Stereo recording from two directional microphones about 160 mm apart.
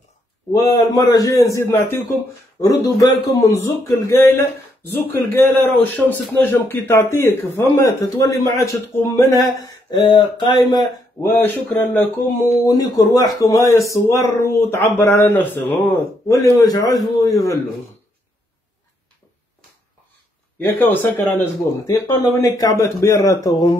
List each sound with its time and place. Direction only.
0.5 s speech: 20° left (ahead or behind)
3.0 s speech: 20° left (ahead or behind)
11.2 s speech: 10° left (ahead or behind)
12.6 s speech: 25° left (ahead or behind)
20.5 s speech: 10° left (ahead or behind)